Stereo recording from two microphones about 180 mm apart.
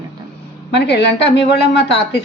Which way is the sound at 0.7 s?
65° left (ahead or behind).